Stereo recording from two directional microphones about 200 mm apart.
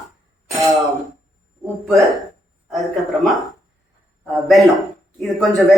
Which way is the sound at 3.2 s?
Centre (ahead or behind).